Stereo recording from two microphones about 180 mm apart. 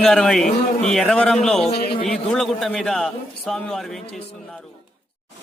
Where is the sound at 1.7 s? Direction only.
60° left (ahead or behind).